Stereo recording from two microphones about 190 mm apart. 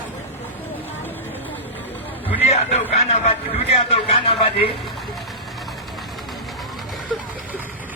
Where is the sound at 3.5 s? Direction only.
30° left (ahead or behind).